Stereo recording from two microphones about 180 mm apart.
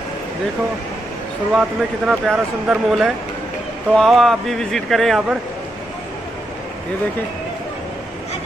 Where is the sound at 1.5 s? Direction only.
5° right (ahead or behind).